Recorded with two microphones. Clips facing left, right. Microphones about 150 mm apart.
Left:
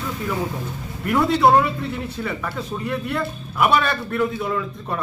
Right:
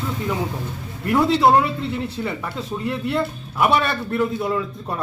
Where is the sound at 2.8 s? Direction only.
25° right (ahead or behind).